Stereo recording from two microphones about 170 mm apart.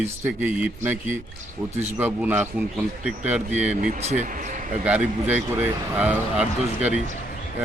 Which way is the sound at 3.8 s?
45° right (ahead or behind).